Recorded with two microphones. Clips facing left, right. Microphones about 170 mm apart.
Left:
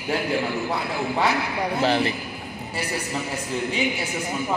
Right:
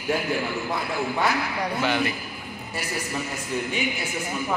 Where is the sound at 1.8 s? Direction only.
30° left (ahead or behind).